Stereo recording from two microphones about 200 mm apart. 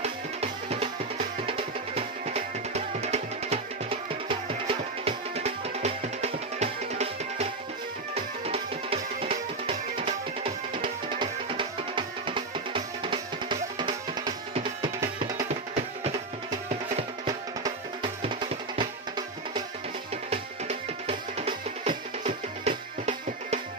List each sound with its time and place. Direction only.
0.0 s music: 30° right (ahead or behind)
18.8 s music: 20° right (ahead or behind)
20.2 s music: 30° right (ahead or behind)